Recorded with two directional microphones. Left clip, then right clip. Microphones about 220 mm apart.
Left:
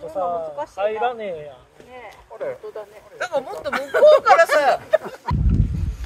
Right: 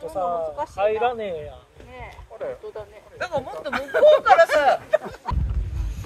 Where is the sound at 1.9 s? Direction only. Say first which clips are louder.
Left 1 dB; 15° right (ahead or behind).